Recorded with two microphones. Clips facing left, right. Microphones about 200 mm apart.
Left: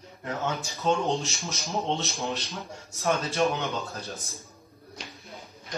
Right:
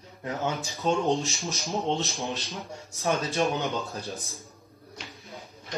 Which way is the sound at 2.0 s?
Centre (ahead or behind).